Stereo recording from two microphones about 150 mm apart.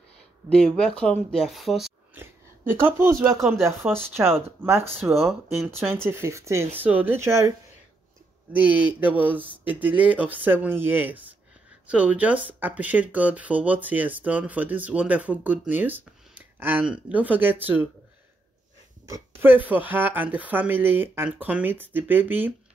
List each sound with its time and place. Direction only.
0.5 s speech: 5° left (ahead or behind)
2.8 s speech: 15° right (ahead or behind)
3.8 s speech: 5° right (ahead or behind)
8.5 s speech: 10° right (ahead or behind)
19.0 s speech: 20° right (ahead or behind)